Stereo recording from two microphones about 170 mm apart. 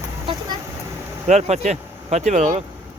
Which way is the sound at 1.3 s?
40° right (ahead or behind).